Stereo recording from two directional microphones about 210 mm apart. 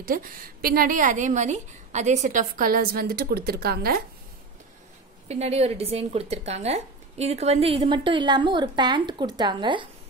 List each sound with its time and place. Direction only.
0.0 s a woman's voice: 40° right (ahead or behind)
5.3 s speech: 30° right (ahead or behind)